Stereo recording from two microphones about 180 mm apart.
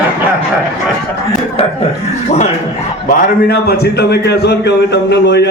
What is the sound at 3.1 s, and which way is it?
A man's voice, 60° left (ahead or behind).